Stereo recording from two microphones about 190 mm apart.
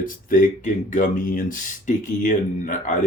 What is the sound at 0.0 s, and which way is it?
Speech, 45° left (ahead or behind).